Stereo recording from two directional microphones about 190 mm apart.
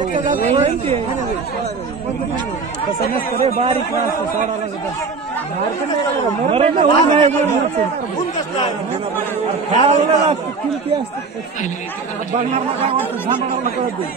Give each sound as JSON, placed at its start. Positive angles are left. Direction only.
{"t": 0.0, "sound": "speech", "side_deg": -45}
{"t": 3.0, "sound": "speech", "side_deg": 55}
{"t": 3.4, "sound": "speech", "side_deg": -30}
{"t": 6.5, "sound": "speech", "side_deg": -30}
{"t": 9.7, "sound": "speech", "side_deg": -35}